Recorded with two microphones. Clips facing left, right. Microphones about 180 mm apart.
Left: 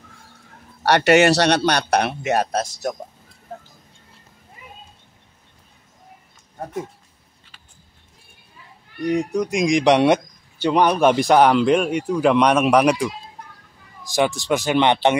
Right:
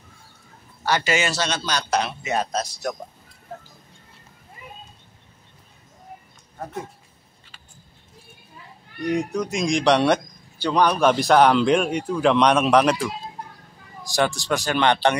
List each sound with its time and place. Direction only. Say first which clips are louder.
0.8 s a man's voice: left 9 dB; 65° left (ahead or behind)
9.3 s speech: left 4 dB; 15° left (ahead or behind)
14.1 s speech: left 3 dB; 20° left (ahead or behind)